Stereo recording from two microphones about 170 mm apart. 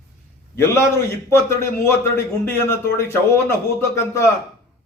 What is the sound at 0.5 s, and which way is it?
A man's voice, 15° left (ahead or behind).